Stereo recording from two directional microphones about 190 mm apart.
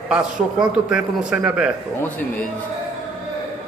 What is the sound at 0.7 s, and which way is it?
A man's voice, 5° right (ahead or behind).